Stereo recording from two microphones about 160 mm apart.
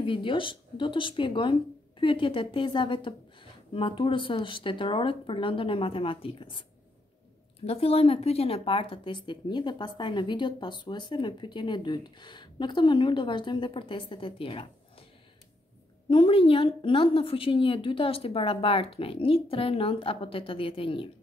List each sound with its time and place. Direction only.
0.0 s speech: 30° left (ahead or behind)
7.6 s speech: 40° left (ahead or behind)
16.1 s speech: 35° left (ahead or behind)